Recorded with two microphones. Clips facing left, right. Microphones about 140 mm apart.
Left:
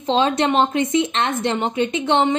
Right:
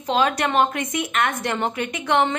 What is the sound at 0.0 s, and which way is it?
A woman's voice, 25° left (ahead or behind).